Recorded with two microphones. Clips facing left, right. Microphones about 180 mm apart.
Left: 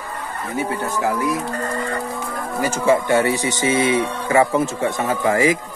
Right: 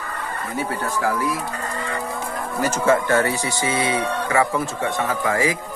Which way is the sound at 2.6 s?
15° left (ahead or behind).